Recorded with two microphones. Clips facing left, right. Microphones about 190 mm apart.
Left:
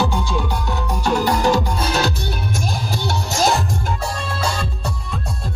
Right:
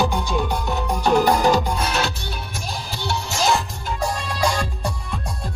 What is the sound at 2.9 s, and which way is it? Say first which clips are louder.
Music: left 3 dB; 40° left (ahead or behind).